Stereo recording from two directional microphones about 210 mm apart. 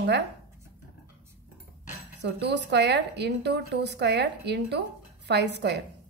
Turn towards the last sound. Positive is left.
turn(degrees=-55)  # may be behind; listen again after turning